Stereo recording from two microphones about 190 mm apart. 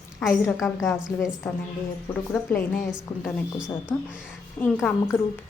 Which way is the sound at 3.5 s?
5° right (ahead or behind).